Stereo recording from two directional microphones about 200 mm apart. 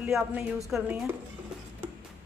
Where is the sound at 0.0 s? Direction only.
10° right (ahead or behind).